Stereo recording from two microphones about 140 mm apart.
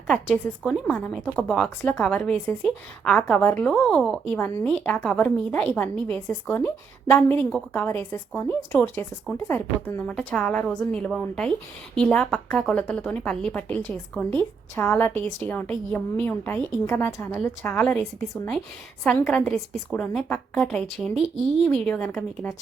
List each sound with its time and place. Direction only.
0.1 s a woman's voice: 5° left (ahead or behind)
19.0 s a woman's voice: 10° left (ahead or behind)